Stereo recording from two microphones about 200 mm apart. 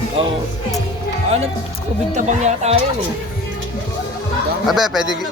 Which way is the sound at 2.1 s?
35° right (ahead or behind).